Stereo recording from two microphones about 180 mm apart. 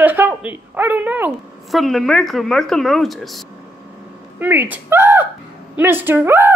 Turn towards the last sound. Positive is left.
turn(degrees=-10)  # may be behind; listen again after turning